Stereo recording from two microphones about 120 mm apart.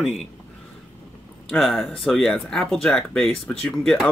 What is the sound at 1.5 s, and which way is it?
Speech, centre (ahead or behind).